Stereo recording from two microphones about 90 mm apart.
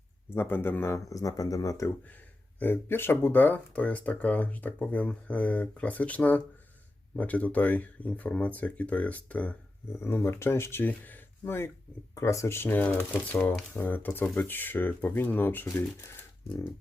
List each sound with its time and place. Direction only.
0.3 s speech: 25° left (ahead or behind)
2.6 s speech: 25° left (ahead or behind)
10.0 s speech: 25° left (ahead or behind)